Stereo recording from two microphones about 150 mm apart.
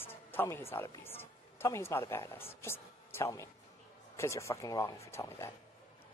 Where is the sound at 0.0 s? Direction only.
15° left (ahead or behind).